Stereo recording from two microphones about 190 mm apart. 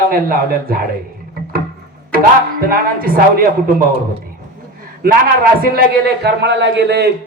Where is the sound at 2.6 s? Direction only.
50° right (ahead or behind).